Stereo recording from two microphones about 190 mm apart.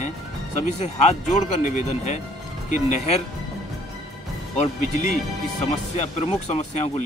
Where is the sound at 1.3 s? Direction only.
40° left (ahead or behind).